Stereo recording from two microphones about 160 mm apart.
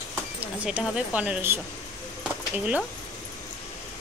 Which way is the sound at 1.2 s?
10° right (ahead or behind).